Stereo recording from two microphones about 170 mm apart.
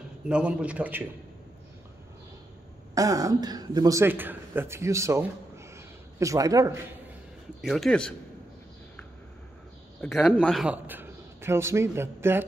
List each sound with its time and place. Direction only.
0.3 s a man's voice: 5° right (ahead or behind)
2.9 s speech: 20° right (ahead or behind)
7.6 s a man's voice: centre (ahead or behind)
10.0 s a man's voice: 10° left (ahead or behind)
10.4 s a man's voice: centre (ahead or behind)